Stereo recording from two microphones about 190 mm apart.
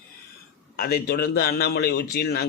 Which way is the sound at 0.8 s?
50° left (ahead or behind).